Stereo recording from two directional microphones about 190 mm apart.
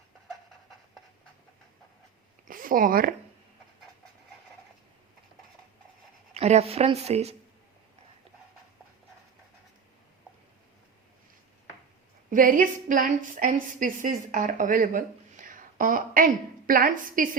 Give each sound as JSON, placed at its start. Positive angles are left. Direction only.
{"t": 2.5, "sound": "speech", "side_deg": -45}
{"t": 6.3, "sound": "a woman's voice", "side_deg": -35}
{"t": 12.3, "sound": "a woman's voice", "side_deg": -45}